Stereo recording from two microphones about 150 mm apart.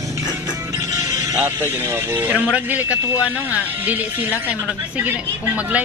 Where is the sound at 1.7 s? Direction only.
15° right (ahead or behind).